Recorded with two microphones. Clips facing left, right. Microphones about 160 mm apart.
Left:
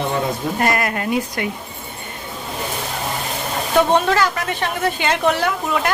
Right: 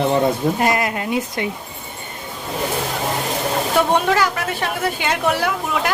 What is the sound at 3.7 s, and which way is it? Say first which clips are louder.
A woman's voice: left 2 dB; 10° right (ahead or behind).